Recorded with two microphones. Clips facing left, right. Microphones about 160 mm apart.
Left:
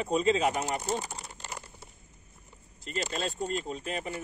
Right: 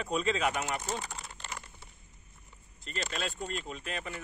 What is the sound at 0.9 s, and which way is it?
Typing, 35° left (ahead or behind).